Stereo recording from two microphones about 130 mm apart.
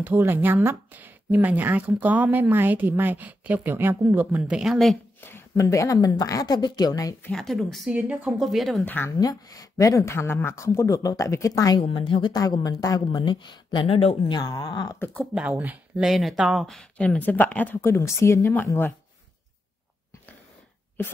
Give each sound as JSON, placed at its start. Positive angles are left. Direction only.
{"t": 0.0, "sound": "a woman's voice", "side_deg": -20}
{"t": 5.2, "sound": "speech", "side_deg": 20}
{"t": 7.2, "sound": "speech", "side_deg": 5}
{"t": 8.4, "sound": "speech", "side_deg": 0}
{"t": 8.8, "sound": "speech", "side_deg": 15}
{"t": 9.1, "sound": "speech", "side_deg": 30}
{"t": 14.4, "sound": "speech", "side_deg": 30}
{"t": 15.3, "sound": "a woman's voice", "side_deg": -10}
{"t": 16.1, "sound": "speech", "side_deg": 0}